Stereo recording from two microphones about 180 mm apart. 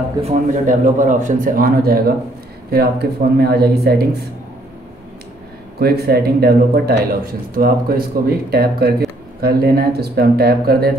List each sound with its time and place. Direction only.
0.2 s speech: 40° right (ahead or behind); by 4.3 s 60° right (ahead or behind)
5.8 s speech: 60° right (ahead or behind)